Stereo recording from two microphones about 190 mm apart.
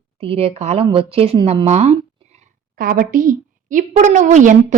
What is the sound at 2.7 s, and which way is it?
A woman's voice, 50° right (ahead or behind).